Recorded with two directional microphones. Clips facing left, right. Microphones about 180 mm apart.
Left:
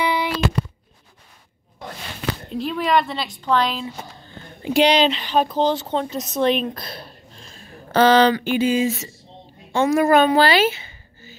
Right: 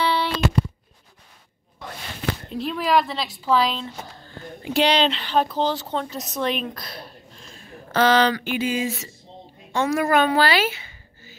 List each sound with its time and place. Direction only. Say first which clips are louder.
0.0 s a sound: left 1 dB; 10° left (ahead or behind)
2.5 s a woman's voice: left 1 dB; centre (ahead or behind)
4.7 s a woman's voice: left 3 dB; 15° left (ahead or behind)